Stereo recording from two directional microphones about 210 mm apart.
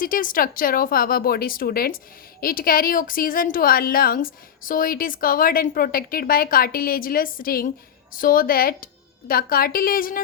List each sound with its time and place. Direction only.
0.0 s speech: 40° left (ahead or behind)